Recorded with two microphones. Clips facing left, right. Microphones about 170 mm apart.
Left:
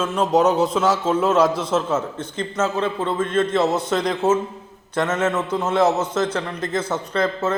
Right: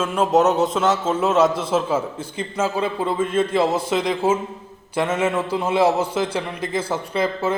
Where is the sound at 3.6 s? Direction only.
30° right (ahead or behind).